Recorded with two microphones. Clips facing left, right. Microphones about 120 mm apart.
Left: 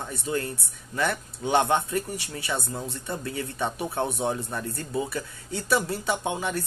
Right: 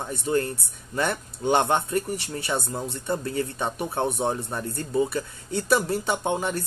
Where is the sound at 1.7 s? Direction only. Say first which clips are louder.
Right 1 dB; 35° right (ahead or behind).